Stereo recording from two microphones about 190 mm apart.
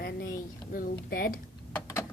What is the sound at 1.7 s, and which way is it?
Vehicle, 15° left (ahead or behind).